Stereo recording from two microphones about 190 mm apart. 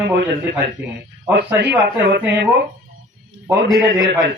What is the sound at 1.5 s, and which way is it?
Speech, 65° right (ahead or behind).